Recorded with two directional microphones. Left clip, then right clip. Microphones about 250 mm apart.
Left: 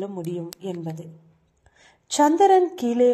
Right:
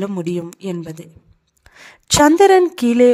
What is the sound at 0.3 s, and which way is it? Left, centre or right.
Speech, right.